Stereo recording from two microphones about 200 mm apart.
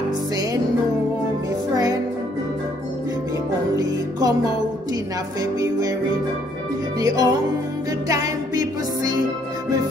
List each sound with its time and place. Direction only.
3.7 s music: 20° right (ahead or behind)
5.4 s music: 20° right (ahead or behind)
7.0 s music: 20° right (ahead or behind)